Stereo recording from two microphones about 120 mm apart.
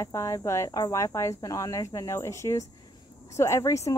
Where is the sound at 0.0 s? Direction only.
25° left (ahead or behind).